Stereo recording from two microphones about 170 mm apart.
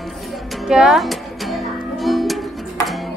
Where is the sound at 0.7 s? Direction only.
5° right (ahead or behind).